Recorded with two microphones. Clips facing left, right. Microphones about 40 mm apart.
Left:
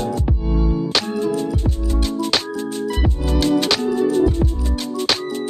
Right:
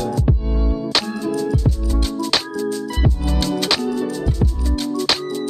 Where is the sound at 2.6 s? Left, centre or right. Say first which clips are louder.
Right 1 dB; left.